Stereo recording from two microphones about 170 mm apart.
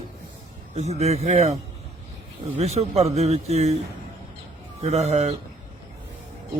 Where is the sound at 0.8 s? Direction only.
40° right (ahead or behind).